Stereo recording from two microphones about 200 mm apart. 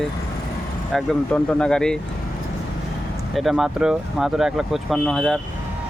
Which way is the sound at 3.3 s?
Centre (ahead or behind).